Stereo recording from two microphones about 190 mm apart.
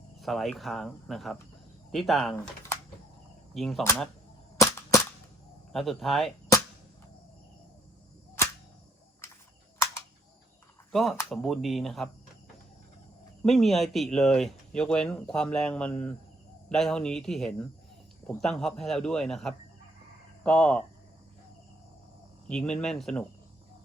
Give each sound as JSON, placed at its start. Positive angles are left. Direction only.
{"t": 0.2, "sound": "speech", "side_deg": 0}
{"t": 2.3, "sound": "speech", "side_deg": 15}
{"t": 3.5, "sound": "speech", "side_deg": 0}
{"t": 4.5, "sound": "cap gun", "side_deg": 15}
{"t": 5.7, "sound": "speech", "side_deg": 0}
{"t": 10.9, "sound": "speech", "side_deg": 0}
{"t": 13.4, "sound": "speech", "side_deg": 0}
{"t": 22.4, "sound": "speech", "side_deg": 5}